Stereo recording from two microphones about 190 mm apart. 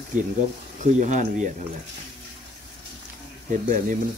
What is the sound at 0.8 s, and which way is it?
Speech, 40° right (ahead or behind).